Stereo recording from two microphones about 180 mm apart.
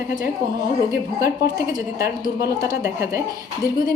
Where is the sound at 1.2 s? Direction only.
20° right (ahead or behind).